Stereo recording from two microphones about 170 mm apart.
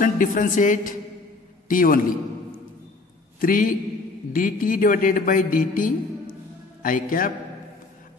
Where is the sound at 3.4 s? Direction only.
55° left (ahead or behind).